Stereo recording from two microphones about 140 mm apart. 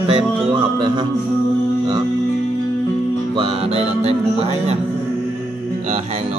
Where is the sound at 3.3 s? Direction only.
45° right (ahead or behind).